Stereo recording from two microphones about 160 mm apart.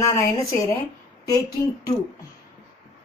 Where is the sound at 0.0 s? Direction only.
20° left (ahead or behind).